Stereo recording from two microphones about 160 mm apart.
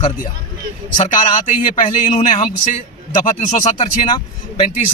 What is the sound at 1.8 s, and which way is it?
Speech, 40° left (ahead or behind).